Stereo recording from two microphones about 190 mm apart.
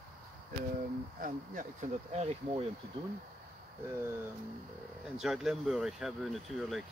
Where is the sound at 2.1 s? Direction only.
35° right (ahead or behind).